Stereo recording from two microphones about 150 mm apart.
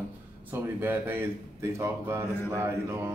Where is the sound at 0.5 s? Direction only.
15° right (ahead or behind).